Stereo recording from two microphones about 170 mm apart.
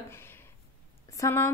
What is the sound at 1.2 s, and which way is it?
Speech, 15° left (ahead or behind).